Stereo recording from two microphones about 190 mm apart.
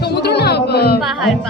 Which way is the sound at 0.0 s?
60° left (ahead or behind).